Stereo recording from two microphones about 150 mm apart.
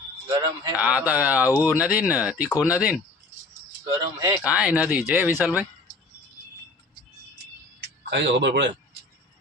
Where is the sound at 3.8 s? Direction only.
25° right (ahead or behind).